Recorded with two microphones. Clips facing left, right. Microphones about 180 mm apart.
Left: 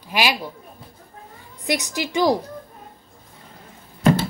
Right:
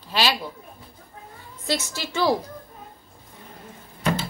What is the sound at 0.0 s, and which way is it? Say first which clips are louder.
Speech: left 2 dB; 15° left (ahead or behind).